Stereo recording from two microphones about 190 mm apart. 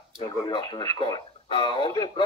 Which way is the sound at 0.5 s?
20° left (ahead or behind).